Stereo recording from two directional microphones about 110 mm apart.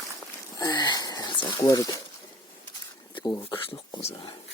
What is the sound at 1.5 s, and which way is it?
Speech, 35° left (ahead or behind).